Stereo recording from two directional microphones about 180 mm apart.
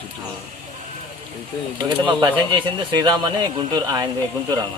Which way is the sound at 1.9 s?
25° right (ahead or behind).